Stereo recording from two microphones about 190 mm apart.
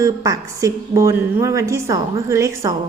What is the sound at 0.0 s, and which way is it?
A woman's voice, 15° right (ahead or behind).